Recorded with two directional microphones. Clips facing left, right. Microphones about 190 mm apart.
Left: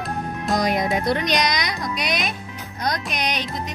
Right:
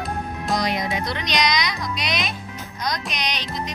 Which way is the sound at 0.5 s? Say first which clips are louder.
Left 4 dB; 55° left (ahead or behind).